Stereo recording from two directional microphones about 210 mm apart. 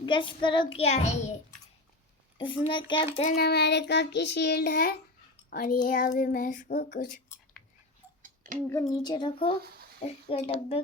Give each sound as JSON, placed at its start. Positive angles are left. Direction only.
{"t": 0.0, "sound": "child singing", "side_deg": 25}
{"t": 2.4, "sound": "child singing", "side_deg": 25}
{"t": 3.3, "sound": "child singing", "side_deg": 50}
{"t": 5.5, "sound": "speech", "side_deg": 45}
{"t": 8.4, "sound": "a sound", "side_deg": -40}
{"t": 8.8, "sound": "child singing", "side_deg": 20}